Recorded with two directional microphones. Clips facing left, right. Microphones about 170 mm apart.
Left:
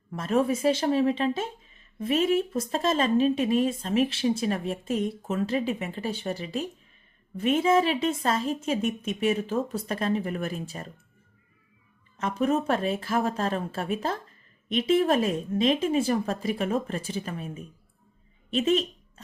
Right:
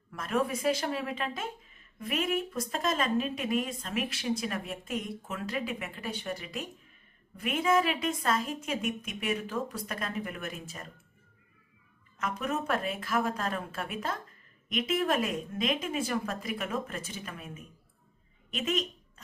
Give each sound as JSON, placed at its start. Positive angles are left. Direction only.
{"t": 0.1, "sound": "speech", "side_deg": 25}
{"t": 12.1, "sound": "speech", "side_deg": 30}